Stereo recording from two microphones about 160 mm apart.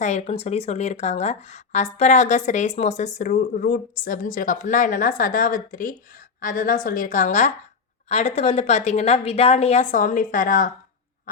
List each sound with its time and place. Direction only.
0.0 s a woman's voice: 45° left (ahead or behind)